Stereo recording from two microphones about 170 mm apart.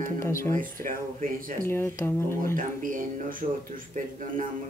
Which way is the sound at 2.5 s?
50° right (ahead or behind).